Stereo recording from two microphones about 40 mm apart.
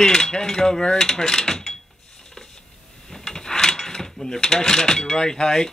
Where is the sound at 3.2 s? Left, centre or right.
Centre.